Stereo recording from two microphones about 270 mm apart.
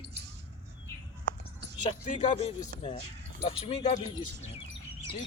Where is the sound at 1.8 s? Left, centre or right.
Left.